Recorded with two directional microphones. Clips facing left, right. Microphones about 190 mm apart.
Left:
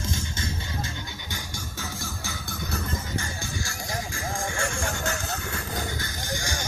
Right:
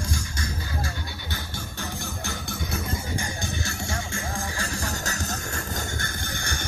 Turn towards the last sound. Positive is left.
turn(degrees=-55)  # may be behind; listen again after turning